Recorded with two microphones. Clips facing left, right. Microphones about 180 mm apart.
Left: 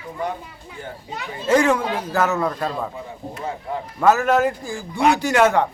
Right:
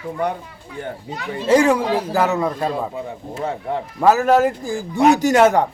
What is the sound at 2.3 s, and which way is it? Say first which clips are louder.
Speech: right 2 dB; 20° right (ahead or behind).